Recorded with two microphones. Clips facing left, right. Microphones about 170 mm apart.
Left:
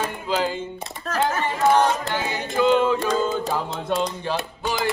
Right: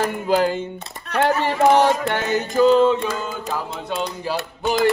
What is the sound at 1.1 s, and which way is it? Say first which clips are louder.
Speech: right 4 dB; 70° right (ahead or behind).